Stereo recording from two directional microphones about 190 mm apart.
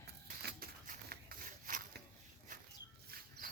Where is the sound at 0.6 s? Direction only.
50° right (ahead or behind).